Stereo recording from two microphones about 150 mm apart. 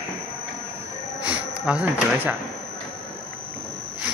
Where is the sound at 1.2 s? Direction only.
10° right (ahead or behind).